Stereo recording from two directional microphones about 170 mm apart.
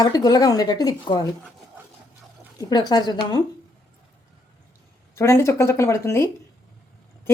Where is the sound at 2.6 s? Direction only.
25° left (ahead or behind).